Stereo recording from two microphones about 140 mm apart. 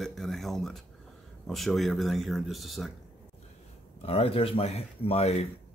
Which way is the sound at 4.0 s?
45° left (ahead or behind).